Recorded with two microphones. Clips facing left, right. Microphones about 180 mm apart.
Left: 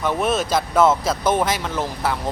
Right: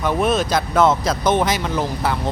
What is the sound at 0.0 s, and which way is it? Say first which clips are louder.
Speech: right 2 dB; centre (ahead or behind).